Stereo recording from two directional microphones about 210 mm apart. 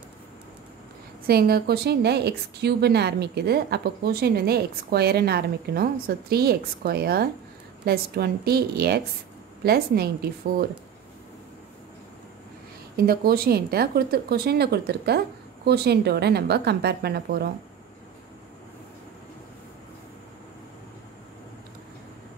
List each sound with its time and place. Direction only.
1.2 s a woman's voice: 50° right (ahead or behind)
12.9 s a woman's voice: 45° right (ahead or behind)